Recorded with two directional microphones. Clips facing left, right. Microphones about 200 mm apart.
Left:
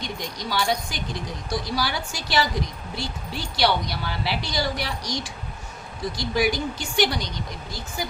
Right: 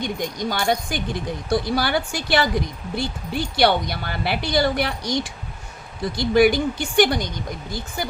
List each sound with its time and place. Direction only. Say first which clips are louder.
0.0 s a woman's voice: right 7 dB; 50° right (ahead or behind)
6.1 s a woman's voice: right 8 dB; 55° right (ahead or behind)